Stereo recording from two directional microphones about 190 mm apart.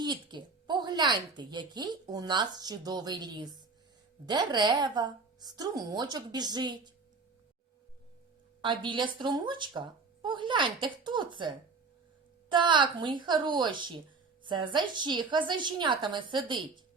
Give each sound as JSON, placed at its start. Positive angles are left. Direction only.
{"t": 0.0, "sound": "speech", "side_deg": -25}
{"t": 8.6, "sound": "speech", "side_deg": -25}